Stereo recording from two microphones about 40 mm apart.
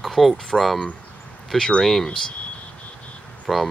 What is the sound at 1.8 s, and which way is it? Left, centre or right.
Speech, centre.